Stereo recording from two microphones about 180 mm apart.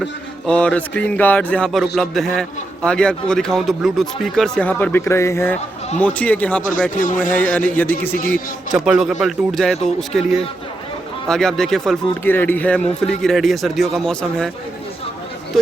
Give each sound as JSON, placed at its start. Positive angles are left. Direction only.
{"t": 0.0, "sound": "a man's voice", "side_deg": 5}
{"t": 6.9, "sound": "speech", "side_deg": 45}
{"t": 7.3, "sound": "speech", "side_deg": 10}
{"t": 8.3, "sound": "a man's voice", "side_deg": 0}